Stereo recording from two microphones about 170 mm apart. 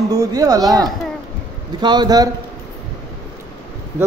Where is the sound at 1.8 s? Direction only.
25° right (ahead or behind).